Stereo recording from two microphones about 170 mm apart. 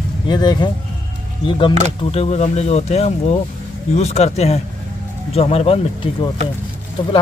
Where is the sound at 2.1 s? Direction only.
40° left (ahead or behind).